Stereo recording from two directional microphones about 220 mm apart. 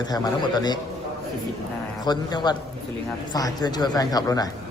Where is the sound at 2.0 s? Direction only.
20° left (ahead or behind).